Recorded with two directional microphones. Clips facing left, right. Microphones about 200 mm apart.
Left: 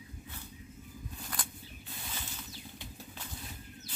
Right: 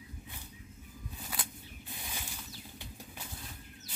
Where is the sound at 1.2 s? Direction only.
5° right (ahead or behind).